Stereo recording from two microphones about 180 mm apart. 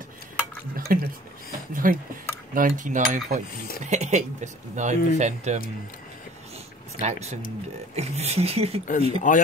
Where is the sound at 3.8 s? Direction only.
40° right (ahead or behind).